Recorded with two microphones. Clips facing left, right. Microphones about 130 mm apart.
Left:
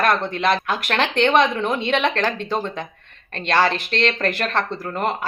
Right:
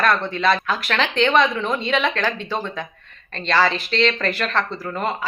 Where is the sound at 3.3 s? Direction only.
50° left (ahead or behind).